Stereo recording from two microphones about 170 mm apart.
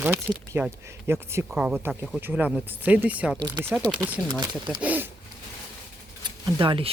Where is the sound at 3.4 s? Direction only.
25° right (ahead or behind).